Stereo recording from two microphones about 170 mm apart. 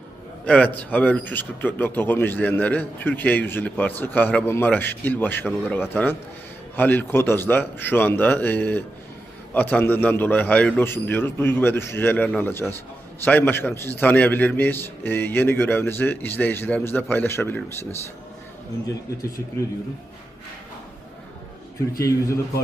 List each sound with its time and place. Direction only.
0.4 s a man's voice: 5° left (ahead or behind)
21.9 s a man's voice: 20° left (ahead or behind)